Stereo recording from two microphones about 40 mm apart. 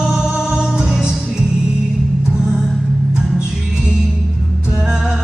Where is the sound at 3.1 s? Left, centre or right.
Right.